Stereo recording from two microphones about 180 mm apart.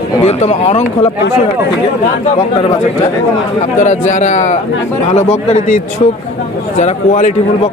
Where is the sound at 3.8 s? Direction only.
45° left (ahead or behind).